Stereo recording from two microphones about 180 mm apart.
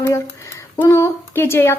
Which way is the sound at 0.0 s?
15° left (ahead or behind).